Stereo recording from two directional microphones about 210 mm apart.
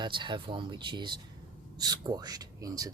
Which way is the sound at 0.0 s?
20° right (ahead or behind).